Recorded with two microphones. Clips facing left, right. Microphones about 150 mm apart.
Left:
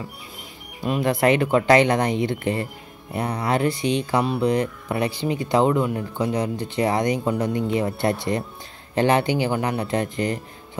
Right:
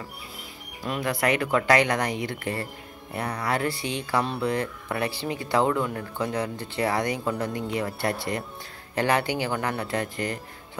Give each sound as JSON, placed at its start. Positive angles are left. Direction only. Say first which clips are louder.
{"t": 0.8, "sound": "speech", "louder": "left 6 dB", "side_deg": 20}